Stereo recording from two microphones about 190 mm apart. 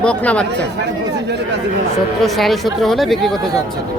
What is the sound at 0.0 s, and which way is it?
Speech, 5° left (ahead or behind).